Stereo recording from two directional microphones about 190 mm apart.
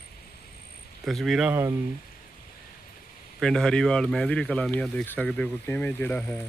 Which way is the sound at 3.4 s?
5° left (ahead or behind).